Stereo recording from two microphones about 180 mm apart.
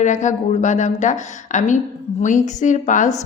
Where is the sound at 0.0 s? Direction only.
40° left (ahead or behind).